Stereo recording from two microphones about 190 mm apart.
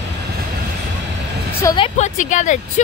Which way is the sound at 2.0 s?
40° left (ahead or behind).